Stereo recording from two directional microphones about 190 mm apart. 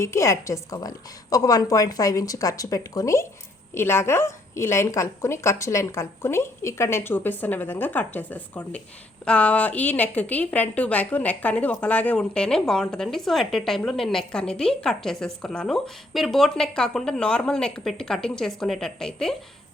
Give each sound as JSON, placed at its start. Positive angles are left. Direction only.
{"t": 0.0, "sound": "a woman's voice", "side_deg": 15}